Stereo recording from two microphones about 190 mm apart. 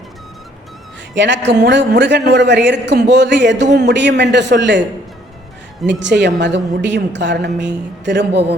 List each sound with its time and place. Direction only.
1.1 s a man's voice: 70° right (ahead or behind)
5.8 s a man's voice: 65° right (ahead or behind)